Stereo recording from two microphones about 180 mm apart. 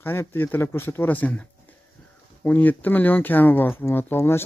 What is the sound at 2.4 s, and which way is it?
Speech, 10° left (ahead or behind).